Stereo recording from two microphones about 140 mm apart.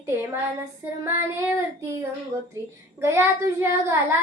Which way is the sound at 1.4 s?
15° right (ahead or behind).